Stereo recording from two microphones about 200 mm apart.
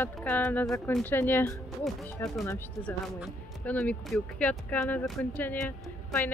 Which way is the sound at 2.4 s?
10° left (ahead or behind).